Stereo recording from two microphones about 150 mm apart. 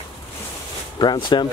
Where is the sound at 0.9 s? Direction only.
30° left (ahead or behind).